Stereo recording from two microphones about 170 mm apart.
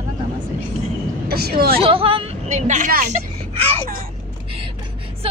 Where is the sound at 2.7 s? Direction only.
55° right (ahead or behind).